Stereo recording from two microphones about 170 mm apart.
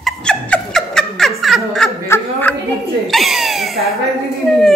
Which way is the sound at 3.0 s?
Centre (ahead or behind).